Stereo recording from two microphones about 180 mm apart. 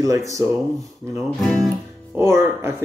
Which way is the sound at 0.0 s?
20° right (ahead or behind).